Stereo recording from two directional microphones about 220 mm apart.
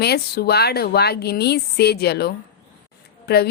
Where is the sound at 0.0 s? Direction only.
45° left (ahead or behind).